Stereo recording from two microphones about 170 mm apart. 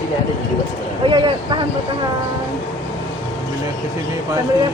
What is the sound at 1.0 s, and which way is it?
Speech, 30° right (ahead or behind).